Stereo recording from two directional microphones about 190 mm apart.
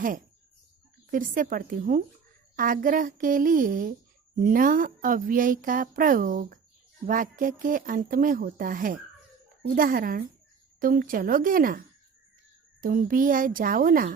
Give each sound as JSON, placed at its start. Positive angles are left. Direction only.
{"t": 1.1, "sound": "speech", "side_deg": -45}
{"t": 12.8, "sound": "speech", "side_deg": -45}